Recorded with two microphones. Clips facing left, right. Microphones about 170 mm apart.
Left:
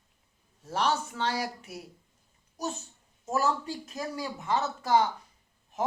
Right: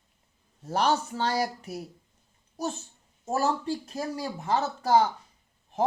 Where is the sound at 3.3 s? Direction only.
30° right (ahead or behind).